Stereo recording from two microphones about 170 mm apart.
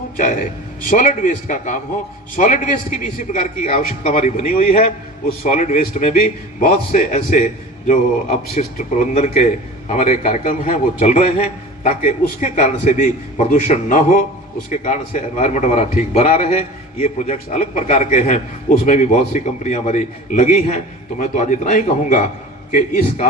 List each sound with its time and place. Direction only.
0.2 s a man's voice: 50° left (ahead or behind)
15.4 s a man's voice: 45° left (ahead or behind)